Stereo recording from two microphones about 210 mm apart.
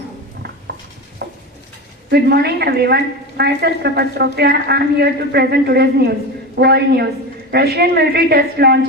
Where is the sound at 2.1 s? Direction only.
50° right (ahead or behind).